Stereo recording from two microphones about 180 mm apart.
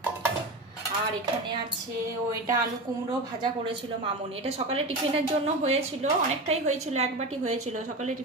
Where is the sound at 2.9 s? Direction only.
20° right (ahead or behind).